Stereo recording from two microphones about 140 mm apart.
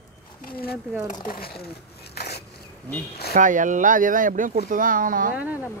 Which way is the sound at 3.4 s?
65° right (ahead or behind).